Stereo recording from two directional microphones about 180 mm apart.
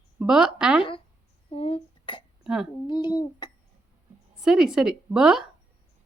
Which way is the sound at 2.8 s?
25° left (ahead or behind).